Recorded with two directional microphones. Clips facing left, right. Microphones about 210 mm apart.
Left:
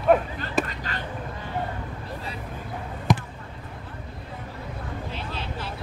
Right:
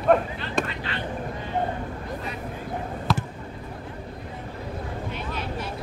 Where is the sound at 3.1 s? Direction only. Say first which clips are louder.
Left 3 dB; 15° left (ahead or behind).